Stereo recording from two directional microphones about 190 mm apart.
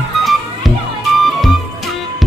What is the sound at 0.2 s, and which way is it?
Music, centre (ahead or behind).